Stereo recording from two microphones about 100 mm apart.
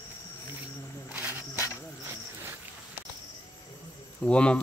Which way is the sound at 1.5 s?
30° left (ahead or behind).